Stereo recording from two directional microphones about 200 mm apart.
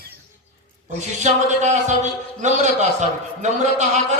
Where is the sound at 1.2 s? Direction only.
35° right (ahead or behind).